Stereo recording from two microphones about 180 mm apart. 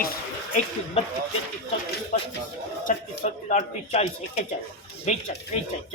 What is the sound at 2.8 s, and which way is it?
A man's voice, 45° left (ahead or behind).